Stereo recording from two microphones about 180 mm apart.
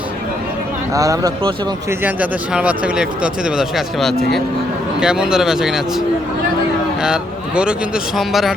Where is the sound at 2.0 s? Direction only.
10° right (ahead or behind).